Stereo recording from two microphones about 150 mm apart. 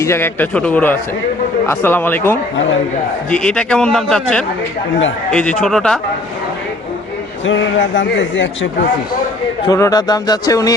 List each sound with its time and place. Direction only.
0.0 s a man's voice: 15° left (ahead or behind)
9.6 s speech: 20° left (ahead or behind)